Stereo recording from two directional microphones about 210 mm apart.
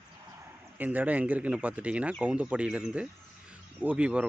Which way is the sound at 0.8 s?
10° right (ahead or behind).